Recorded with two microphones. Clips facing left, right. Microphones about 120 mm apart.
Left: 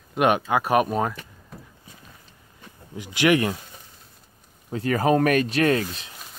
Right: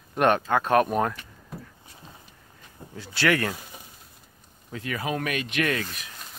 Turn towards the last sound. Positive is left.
turn(degrees=25)  # may be behind; listen again after turning